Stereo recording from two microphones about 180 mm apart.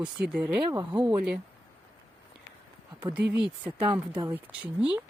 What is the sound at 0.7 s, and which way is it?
Speech, 20° right (ahead or behind).